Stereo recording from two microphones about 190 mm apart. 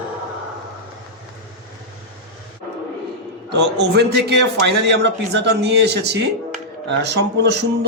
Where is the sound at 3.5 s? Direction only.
60° right (ahead or behind).